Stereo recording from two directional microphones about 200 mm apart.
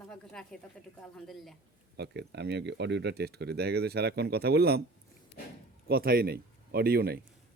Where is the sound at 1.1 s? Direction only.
Centre (ahead or behind).